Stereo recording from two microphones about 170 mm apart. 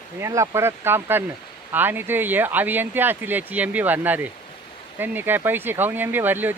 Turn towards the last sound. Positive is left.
turn(degrees=-10)  # may be behind; listen again after turning